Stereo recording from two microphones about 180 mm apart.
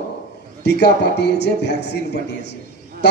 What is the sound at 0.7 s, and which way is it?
A man's voice, 65° left (ahead or behind).